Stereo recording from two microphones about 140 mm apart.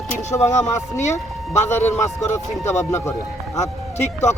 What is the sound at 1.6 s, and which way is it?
A man's voice, 20° left (ahead or behind).